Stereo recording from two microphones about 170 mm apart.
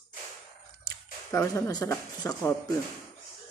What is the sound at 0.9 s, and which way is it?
Speech, 15° left (ahead or behind).